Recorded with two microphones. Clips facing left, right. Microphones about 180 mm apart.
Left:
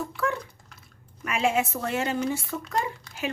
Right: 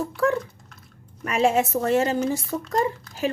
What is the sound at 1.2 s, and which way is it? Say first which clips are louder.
Speech: right 4 dB; 40° right (ahead or behind).